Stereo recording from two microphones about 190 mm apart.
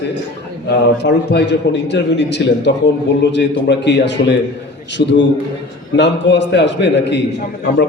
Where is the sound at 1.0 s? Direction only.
65° left (ahead or behind).